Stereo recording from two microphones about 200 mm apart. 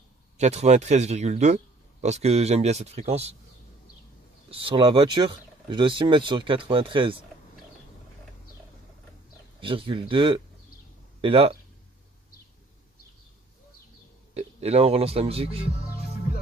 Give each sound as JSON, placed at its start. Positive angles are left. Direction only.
{"t": 0.4, "sound": "speech", "side_deg": -35}
{"t": 4.5, "sound": "speech", "side_deg": -25}
{"t": 9.6, "sound": "speech", "side_deg": -25}
{"t": 14.3, "sound": "speech", "side_deg": -30}